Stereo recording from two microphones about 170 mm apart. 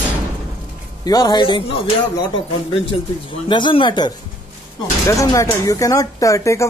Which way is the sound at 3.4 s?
30° left (ahead or behind).